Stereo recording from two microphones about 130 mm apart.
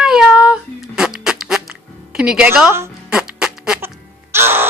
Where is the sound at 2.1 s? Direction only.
5° right (ahead or behind).